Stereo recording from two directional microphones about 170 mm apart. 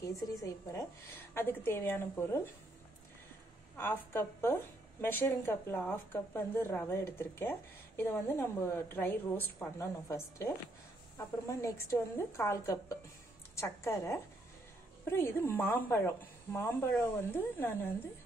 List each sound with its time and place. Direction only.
0.0 s a woman's voice: 20° left (ahead or behind)
3.7 s a woman's voice: 10° left (ahead or behind)